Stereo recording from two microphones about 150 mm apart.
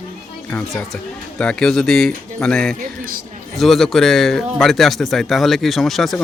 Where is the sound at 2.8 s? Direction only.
70° right (ahead or behind).